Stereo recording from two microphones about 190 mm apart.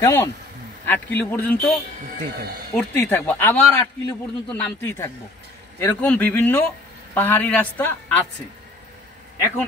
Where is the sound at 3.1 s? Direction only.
10° left (ahead or behind).